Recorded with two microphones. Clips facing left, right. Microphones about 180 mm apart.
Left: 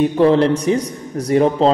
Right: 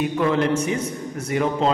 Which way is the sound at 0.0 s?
30° left (ahead or behind).